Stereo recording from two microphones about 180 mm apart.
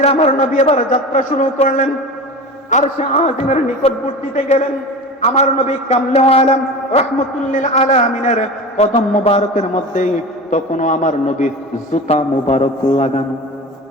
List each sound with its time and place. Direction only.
0.0 s a man's voice: 35° left (ahead or behind)